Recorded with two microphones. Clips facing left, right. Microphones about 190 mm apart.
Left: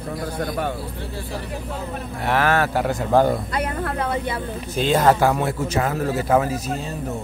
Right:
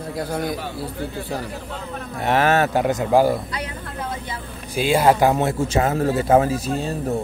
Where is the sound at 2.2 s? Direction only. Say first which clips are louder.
Right 2 dB; 20° right (ahead or behind).